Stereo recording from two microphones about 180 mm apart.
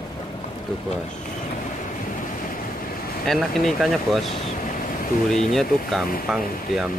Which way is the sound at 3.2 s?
Centre (ahead or behind).